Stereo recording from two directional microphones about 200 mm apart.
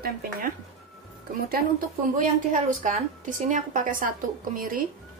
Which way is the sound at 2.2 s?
40° right (ahead or behind).